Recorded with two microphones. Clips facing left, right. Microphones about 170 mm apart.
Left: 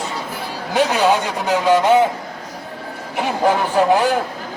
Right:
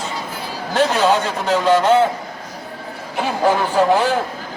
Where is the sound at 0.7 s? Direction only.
15° left (ahead or behind).